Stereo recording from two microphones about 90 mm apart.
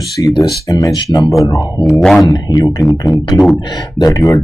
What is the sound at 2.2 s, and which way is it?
Speech, 40° left (ahead or behind).